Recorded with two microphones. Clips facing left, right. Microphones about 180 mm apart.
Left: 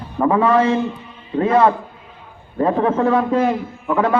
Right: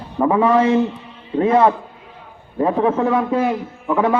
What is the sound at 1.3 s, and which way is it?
A man's voice, 20° right (ahead or behind).